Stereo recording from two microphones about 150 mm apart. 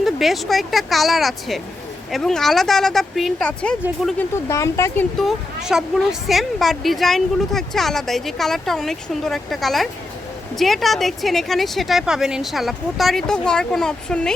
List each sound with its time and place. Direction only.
0.0 s speech: centre (ahead or behind)
4.2 s speech: 20° left (ahead or behind)
5.2 s speech: 5° right (ahead or behind)